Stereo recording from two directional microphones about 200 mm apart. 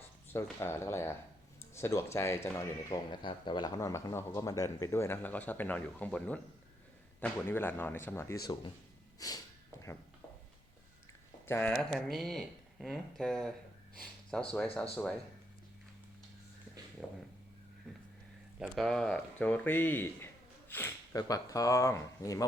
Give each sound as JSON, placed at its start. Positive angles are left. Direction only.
{"t": 0.6, "sound": "speech", "side_deg": 10}
{"t": 9.1, "sound": "snort", "side_deg": 15}
{"t": 11.4, "sound": "speech", "side_deg": 10}
{"t": 17.0, "sound": "speech", "side_deg": 0}
{"t": 18.6, "sound": "speech", "side_deg": 0}